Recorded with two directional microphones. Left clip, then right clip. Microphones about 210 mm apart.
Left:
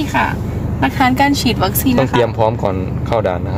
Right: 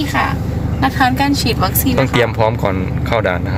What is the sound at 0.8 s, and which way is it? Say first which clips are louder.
Speech: left 1 dB; 25° left (ahead or behind).